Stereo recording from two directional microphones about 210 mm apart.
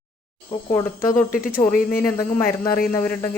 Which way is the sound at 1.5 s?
40° left (ahead or behind).